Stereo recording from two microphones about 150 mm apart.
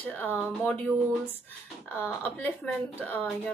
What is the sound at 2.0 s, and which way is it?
A woman's voice, 10° left (ahead or behind).